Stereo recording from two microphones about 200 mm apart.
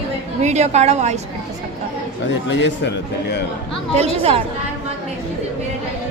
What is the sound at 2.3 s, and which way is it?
A man's voice, 60° left (ahead or behind).